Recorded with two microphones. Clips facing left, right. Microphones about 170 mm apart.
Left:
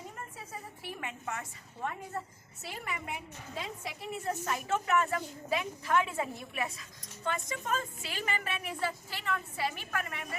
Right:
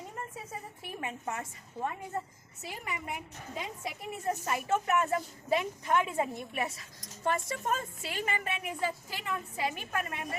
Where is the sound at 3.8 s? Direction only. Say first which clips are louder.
Right 2 dB; 10° right (ahead or behind).